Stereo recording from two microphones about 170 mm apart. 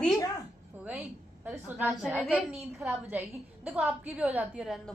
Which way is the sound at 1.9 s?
Centre (ahead or behind).